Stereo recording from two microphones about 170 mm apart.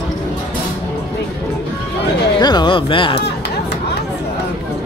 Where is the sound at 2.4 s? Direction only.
25° left (ahead or behind).